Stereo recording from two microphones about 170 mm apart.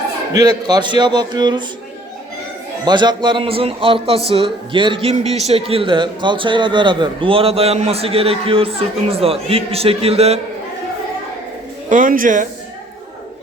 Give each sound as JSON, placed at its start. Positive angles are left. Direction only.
{"t": 0.3, "sound": "a man's voice", "side_deg": -25}
{"t": 2.8, "sound": "a man's voice", "side_deg": -25}
{"t": 11.9, "sound": "speech", "side_deg": -50}